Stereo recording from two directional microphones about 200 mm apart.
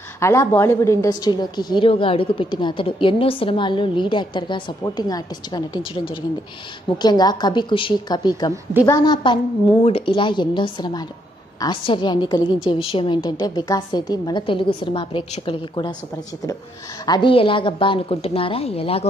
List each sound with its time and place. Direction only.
0.2 s a woman's voice: 15° left (ahead or behind)
7.0 s a woman's voice: 20° left (ahead or behind)
17.0 s a woman's voice: 20° left (ahead or behind)